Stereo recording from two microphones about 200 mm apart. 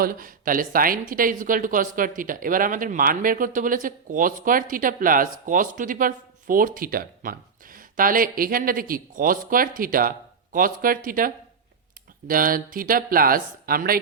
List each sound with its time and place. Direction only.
0.0 s speech: 45° right (ahead or behind)
12.3 s speech: 45° right (ahead or behind)